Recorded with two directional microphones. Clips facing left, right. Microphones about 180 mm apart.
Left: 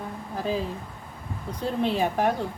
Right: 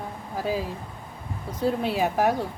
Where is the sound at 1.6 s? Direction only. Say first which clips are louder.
Right 1 dB; 5° right (ahead or behind).